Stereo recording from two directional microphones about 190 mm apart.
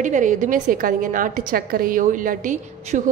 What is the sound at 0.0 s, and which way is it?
A woman's voice, 40° right (ahead or behind).